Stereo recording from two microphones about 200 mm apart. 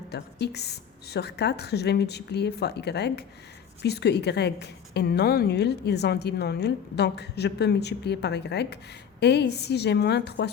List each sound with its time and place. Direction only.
0.1 s a woman's voice: 55° left (ahead or behind)